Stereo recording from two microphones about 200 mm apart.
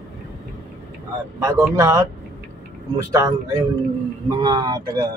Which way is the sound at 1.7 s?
15° right (ahead or behind).